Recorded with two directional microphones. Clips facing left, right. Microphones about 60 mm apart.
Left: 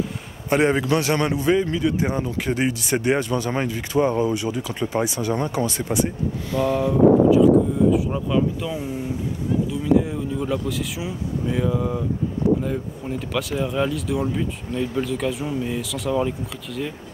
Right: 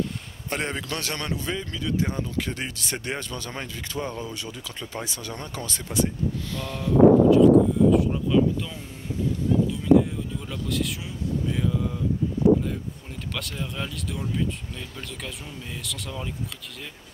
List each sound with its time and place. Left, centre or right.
0.5 s a man's voice: centre
7.3 s speech: centre